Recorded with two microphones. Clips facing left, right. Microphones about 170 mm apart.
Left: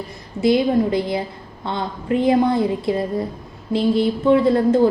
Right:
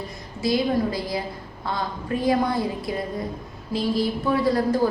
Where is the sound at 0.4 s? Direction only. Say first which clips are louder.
Left 6 dB; 25° left (ahead or behind).